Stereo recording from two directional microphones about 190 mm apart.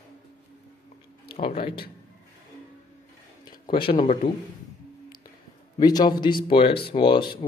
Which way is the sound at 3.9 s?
40° left (ahead or behind).